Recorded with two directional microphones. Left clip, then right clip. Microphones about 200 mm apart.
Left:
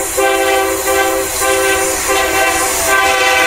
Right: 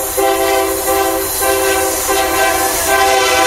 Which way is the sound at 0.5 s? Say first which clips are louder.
Left 1 dB; 25° right (ahead or behind).